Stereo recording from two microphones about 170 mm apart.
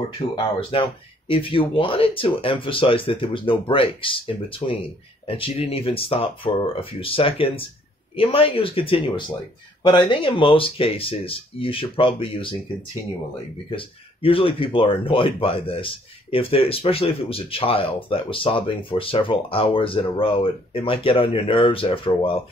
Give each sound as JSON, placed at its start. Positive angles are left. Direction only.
{"t": 0.4, "sound": "speech", "side_deg": 30}
{"t": 13.7, "sound": "speech", "side_deg": 30}